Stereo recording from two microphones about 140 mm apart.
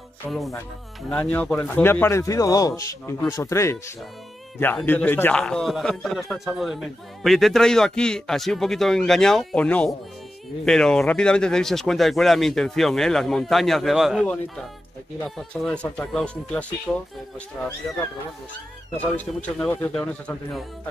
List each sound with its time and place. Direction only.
0.2 s a man's voice: centre (ahead or behind); by 3.7 s 20° left (ahead or behind)
4.8 s a man's voice: 10° left (ahead or behind)
15.2 s a man's voice: centre (ahead or behind)
18.9 s a man's voice: 10° left (ahead or behind)